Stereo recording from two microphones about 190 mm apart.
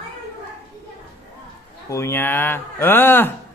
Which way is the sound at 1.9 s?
15° left (ahead or behind).